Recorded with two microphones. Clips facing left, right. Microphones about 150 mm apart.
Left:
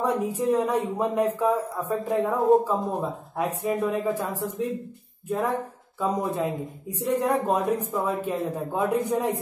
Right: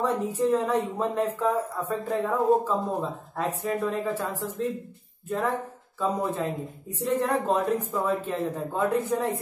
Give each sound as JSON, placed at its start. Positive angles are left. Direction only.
{"t": 0.0, "sound": "speech", "side_deg": 15}
{"t": 5.9, "sound": "speech", "side_deg": 15}